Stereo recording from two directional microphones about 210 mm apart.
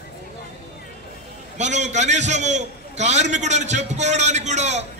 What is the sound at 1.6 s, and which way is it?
A man's voice, 35° right (ahead or behind).